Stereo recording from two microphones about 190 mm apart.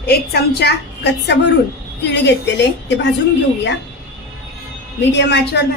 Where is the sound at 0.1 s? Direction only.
60° left (ahead or behind).